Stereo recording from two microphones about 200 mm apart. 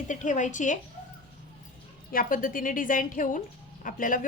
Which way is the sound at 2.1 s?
45° left (ahead or behind).